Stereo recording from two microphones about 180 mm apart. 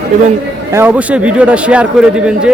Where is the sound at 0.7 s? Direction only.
10° right (ahead or behind).